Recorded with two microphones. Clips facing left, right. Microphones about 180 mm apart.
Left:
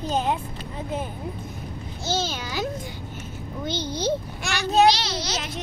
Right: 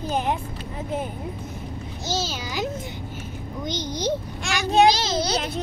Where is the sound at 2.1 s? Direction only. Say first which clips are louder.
Left 1 dB; 10° right (ahead or behind).